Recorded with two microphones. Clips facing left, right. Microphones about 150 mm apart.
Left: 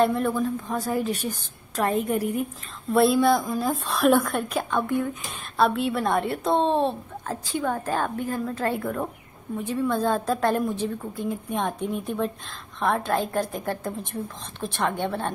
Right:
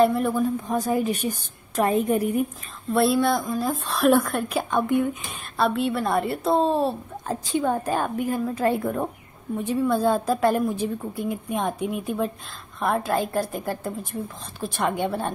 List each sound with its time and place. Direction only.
0.0 s speech: 5° right (ahead or behind)
0.3 s a woman's voice: 15° right (ahead or behind)
2.9 s speech: centre (ahead or behind); by 5.0 s 15° right (ahead or behind)
5.6 s speech: centre (ahead or behind)
7.2 s a woman's voice: 20° right (ahead or behind)